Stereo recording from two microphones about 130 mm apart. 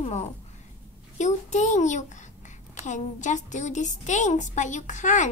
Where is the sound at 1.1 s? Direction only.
65° left (ahead or behind).